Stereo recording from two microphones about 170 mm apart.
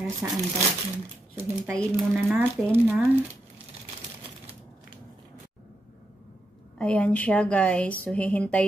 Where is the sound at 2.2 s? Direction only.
10° right (ahead or behind).